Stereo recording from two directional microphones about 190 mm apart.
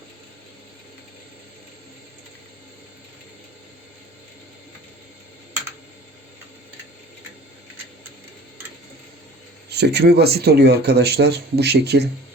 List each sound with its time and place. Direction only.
9.6 s speech: 60° right (ahead or behind)